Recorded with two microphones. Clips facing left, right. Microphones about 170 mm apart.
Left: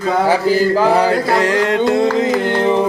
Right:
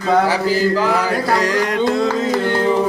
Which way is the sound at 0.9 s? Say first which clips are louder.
Left 4 dB; 30° left (ahead or behind).